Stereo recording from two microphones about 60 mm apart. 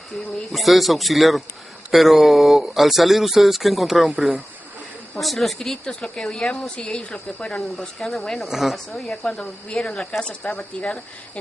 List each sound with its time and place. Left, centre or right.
0.2 s speech: centre
5.1 s a woman's voice: centre
7.5 s speech: centre
9.7 s a woman's voice: centre
10.2 s speech: centre